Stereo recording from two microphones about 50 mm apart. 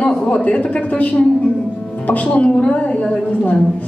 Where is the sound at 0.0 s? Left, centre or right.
Left.